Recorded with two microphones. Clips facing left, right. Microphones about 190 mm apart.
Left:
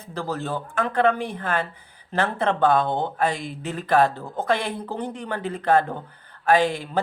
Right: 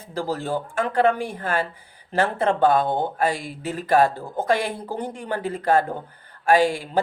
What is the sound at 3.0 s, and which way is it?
Speech, 10° right (ahead or behind).